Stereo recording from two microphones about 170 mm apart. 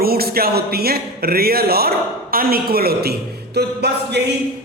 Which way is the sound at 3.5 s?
75° right (ahead or behind).